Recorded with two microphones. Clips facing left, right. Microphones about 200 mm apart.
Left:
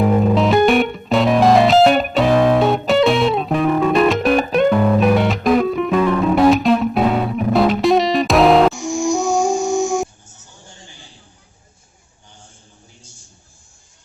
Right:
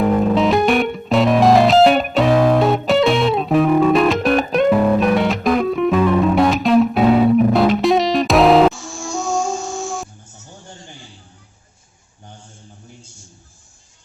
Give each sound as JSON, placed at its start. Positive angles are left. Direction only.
{"t": 0.0, "sound": "music", "side_deg": 0}
{"t": 8.7, "sound": "music", "side_deg": 15}